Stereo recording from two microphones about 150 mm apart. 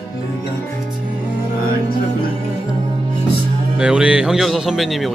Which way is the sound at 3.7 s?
5° right (ahead or behind).